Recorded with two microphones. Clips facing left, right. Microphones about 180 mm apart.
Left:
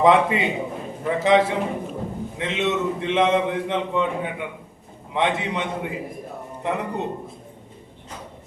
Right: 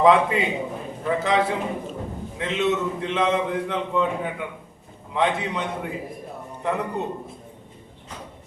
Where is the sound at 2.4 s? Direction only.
20° left (ahead or behind).